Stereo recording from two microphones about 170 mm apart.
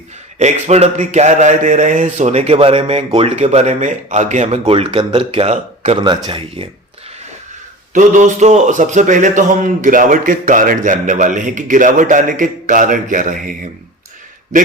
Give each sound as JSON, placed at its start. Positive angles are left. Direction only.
{"t": 0.3, "sound": "a man's voice", "side_deg": -40}
{"t": 6.0, "sound": "speech", "side_deg": -30}
{"t": 7.9, "sound": "a man's voice", "side_deg": -45}